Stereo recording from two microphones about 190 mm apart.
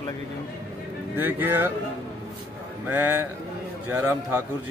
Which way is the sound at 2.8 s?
10° right (ahead or behind).